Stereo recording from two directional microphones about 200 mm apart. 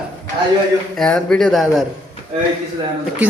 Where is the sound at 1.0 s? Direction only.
5° left (ahead or behind).